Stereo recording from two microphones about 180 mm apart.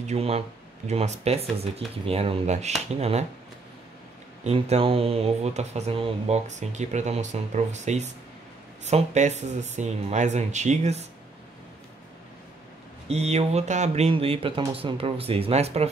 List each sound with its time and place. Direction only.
0.0 s speech: 35° right (ahead or behind)
4.5 s speech: 35° right (ahead or behind)
13.1 s speech: 35° right (ahead or behind)